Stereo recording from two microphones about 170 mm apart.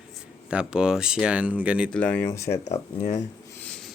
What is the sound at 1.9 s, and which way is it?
Speech, 10° left (ahead or behind).